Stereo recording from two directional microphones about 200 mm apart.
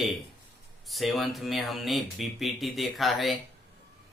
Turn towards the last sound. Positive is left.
turn(degrees=0)  # may be behind; listen again after turning